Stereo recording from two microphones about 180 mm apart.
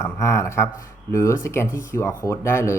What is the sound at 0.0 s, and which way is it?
Speech, 15° left (ahead or behind).